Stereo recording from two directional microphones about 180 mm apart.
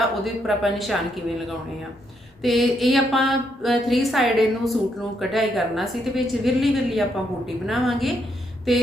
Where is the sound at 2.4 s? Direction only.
Centre (ahead or behind).